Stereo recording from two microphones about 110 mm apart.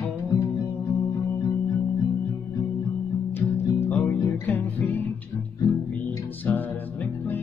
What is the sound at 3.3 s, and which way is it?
Music, 20° left (ahead or behind).